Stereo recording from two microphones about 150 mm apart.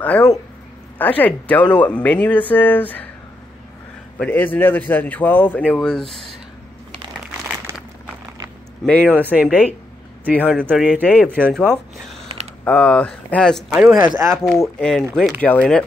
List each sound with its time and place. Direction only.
0.9 s speech: 10° left (ahead or behind)
4.2 s speech: 10° left (ahead or behind)
8.8 s speech: 10° left (ahead or behind)
9.1 s speech: 10° right (ahead or behind)
11.5 s speech: 5° left (ahead or behind)
13.9 s speech: 25° right (ahead or behind)
14.4 s speech: centre (ahead or behind)